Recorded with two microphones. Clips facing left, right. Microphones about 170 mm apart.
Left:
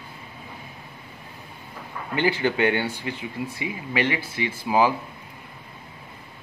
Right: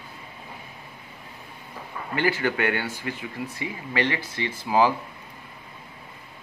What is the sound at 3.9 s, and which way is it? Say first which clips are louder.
Speech: left 1 dB; 10° left (ahead or behind).